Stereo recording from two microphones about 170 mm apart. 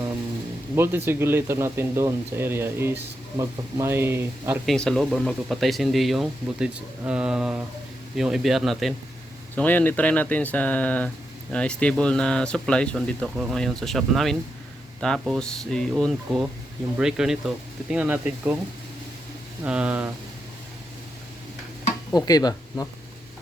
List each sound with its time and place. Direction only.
0.8 s speech: 15° right (ahead or behind)
4.6 s speech: centre (ahead or behind)
19.6 s speech: 5° right (ahead or behind)
22.1 s speech: 20° left (ahead or behind)